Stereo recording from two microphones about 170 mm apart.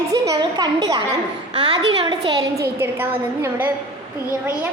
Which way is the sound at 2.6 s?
15° right (ahead or behind).